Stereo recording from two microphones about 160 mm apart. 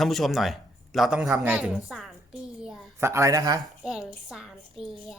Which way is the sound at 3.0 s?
20° right (ahead or behind).